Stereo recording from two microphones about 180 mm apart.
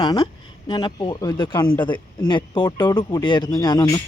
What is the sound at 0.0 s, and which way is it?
Speech, 25° left (ahead or behind).